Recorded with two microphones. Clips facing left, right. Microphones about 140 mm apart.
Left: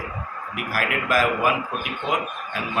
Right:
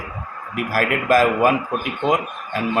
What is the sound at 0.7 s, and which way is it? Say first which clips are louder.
Speech: right 6 dB; 40° right (ahead or behind).